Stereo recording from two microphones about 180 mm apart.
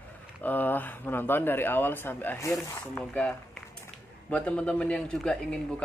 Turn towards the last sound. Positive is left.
turn(degrees=5)  # may be behind; listen again after turning